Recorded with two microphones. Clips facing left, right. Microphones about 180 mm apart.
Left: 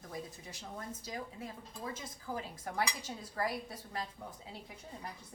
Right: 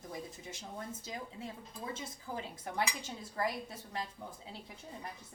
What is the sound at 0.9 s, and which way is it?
A woman's voice, 25° right (ahead or behind).